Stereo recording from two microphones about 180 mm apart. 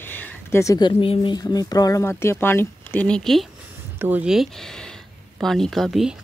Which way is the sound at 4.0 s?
10° right (ahead or behind).